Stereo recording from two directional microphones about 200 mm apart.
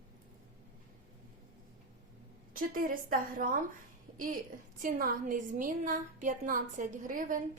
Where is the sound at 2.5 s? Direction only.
45° right (ahead or behind).